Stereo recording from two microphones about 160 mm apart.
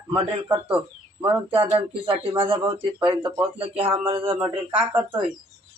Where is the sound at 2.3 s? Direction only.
35° right (ahead or behind).